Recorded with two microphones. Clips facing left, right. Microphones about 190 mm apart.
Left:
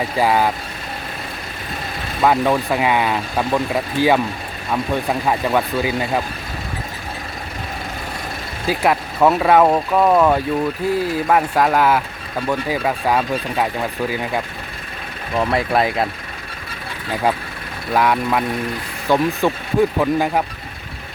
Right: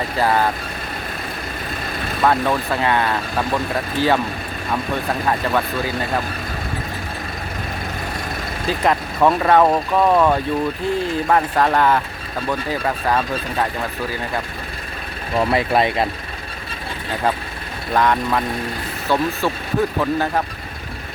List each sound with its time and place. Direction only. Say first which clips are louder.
0.2 s speech: left 1 dB; 10° left (ahead or behind)
2.2 s speech: left 2 dB; 10° left (ahead or behind)
5.3 s speech: left 2 dB; 15° left (ahead or behind)
8.6 s speech: left 1 dB; 10° left (ahead or behind)
15.4 s speech: even; centre (ahead or behind)
17.9 s speech: left 1 dB; 10° left (ahead or behind)